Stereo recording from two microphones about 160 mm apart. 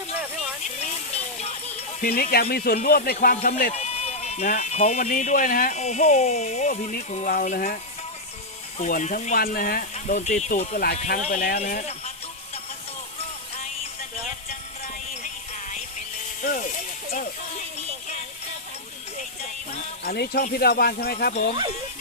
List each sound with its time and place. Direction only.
2.0 s music: 70° left (ahead or behind)
3.8 s speech: 40° left (ahead or behind); by 5.7 s 60° left (ahead or behind)
5.7 s speech: 45° left (ahead or behind)
8.9 s speech: 55° left (ahead or behind)
9.9 s speech: 50° left (ahead or behind)
11.6 s speech: 40° left (ahead or behind)
16.4 s ratchet: 50° left (ahead or behind)
20.1 s speech: 85° left
20.5 s music: 80° left